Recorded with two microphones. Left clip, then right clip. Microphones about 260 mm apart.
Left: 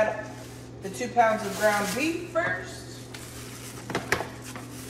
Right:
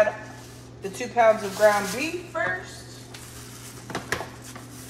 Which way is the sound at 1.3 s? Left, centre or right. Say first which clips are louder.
Right 4 dB; centre.